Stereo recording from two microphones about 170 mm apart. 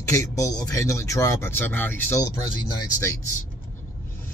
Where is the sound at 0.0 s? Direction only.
20° left (ahead or behind).